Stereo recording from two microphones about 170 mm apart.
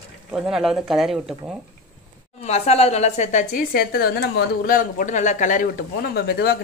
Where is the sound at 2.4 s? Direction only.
40° left (ahead or behind).